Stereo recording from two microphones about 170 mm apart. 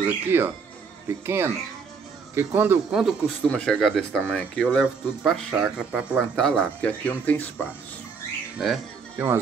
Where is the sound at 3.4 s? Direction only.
5° left (ahead or behind).